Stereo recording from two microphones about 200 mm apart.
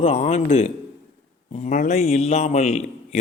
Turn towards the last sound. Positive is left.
turn(degrees=35)  # may be behind; listen again after turning